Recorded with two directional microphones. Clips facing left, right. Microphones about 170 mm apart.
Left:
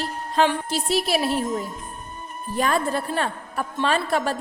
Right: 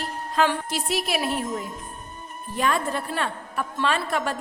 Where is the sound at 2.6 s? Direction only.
35° left (ahead or behind).